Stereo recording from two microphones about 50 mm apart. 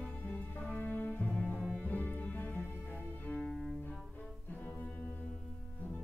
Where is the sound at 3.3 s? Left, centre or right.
Centre.